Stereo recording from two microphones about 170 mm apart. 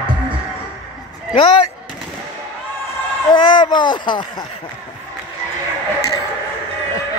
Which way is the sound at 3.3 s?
25° left (ahead or behind).